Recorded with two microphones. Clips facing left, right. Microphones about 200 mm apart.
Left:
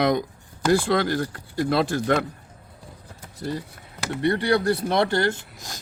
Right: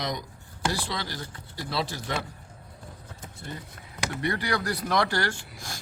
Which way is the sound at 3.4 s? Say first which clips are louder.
Left 11 dB; 35° left (ahead or behind).